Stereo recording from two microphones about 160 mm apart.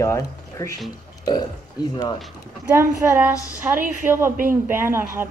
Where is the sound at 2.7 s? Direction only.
15° right (ahead or behind).